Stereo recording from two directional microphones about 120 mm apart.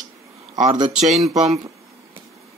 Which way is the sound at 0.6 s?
35° right (ahead or behind).